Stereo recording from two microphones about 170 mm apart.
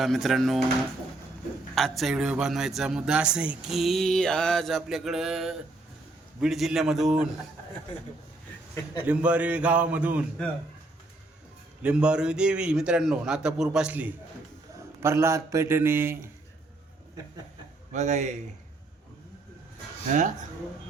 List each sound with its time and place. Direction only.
0.0 s speech: centre (ahead or behind)
1.7 s speech: centre (ahead or behind)
9.0 s a man's voice: 5° right (ahead or behind)
11.8 s a man's voice: 5° right (ahead or behind)
17.9 s speech: 45° right (ahead or behind)
20.1 s speech: 45° right (ahead or behind)